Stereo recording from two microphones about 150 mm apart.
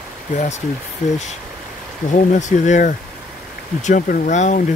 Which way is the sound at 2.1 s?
55° left (ahead or behind).